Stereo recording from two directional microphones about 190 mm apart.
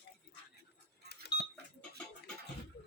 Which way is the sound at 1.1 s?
60° left (ahead or behind).